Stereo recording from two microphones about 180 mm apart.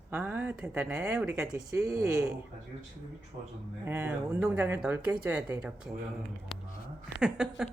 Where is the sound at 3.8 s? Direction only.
10° right (ahead or behind).